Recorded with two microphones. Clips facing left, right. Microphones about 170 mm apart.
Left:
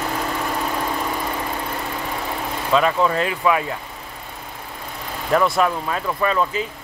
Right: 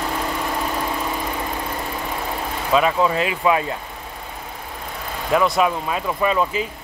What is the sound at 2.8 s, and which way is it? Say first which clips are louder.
Speech: even; 10° right (ahead or behind).